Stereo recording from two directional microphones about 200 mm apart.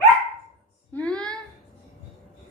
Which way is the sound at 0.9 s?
5° left (ahead or behind).